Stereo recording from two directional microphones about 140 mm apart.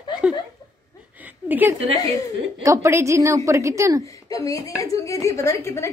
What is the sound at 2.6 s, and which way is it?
A woman's voice, 20° right (ahead or behind).